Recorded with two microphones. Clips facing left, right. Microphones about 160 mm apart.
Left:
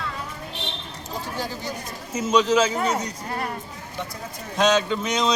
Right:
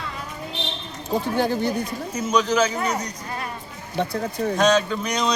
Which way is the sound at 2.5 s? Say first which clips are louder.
Left 1 dB; 25° left (ahead or behind).